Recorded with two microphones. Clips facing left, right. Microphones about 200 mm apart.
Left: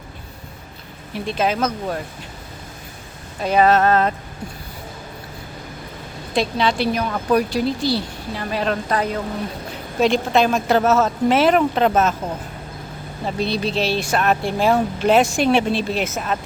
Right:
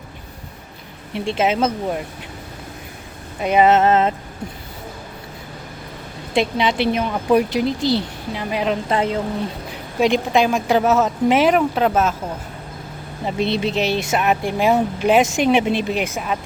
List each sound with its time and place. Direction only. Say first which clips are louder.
1.1 s speech: right 2 dB; 25° right (ahead or behind)
3.4 s speech: right 1 dB; 20° right (ahead or behind)
6.3 s speech: right 1 dB; 20° right (ahead or behind)
10.0 s speech: even; 15° right (ahead or behind)
13.2 s speech: right 2 dB; 20° right (ahead or behind)